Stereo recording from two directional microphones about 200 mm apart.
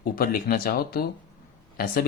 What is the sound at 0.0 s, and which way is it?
Speech, 45° left (ahead or behind).